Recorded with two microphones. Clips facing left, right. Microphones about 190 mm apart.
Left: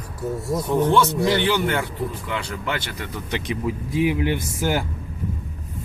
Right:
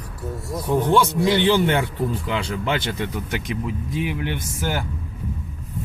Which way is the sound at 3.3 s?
Centre (ahead or behind).